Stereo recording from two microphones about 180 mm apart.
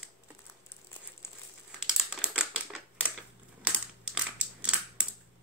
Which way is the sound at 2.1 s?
5° right (ahead or behind).